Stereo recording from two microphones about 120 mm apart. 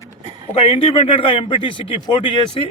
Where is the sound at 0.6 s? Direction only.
50° left (ahead or behind).